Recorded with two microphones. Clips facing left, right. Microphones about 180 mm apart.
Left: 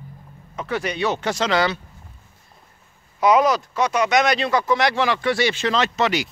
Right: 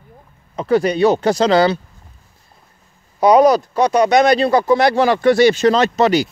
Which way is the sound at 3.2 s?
35° right (ahead or behind).